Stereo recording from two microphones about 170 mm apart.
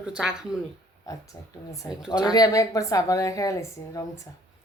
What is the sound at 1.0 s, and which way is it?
A woman's voice, 20° left (ahead or behind).